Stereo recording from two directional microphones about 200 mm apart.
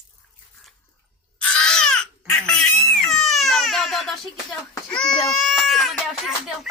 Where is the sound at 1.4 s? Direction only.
5° left (ahead or behind).